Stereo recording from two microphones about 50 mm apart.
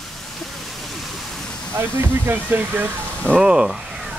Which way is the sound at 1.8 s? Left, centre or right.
Right.